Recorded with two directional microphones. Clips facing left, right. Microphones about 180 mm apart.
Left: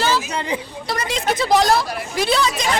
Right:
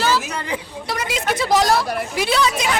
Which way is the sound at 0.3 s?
20° left (ahead or behind).